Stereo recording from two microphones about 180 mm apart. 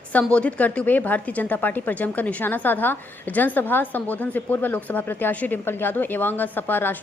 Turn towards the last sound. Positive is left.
turn(degrees=10)  # may be behind; listen again after turning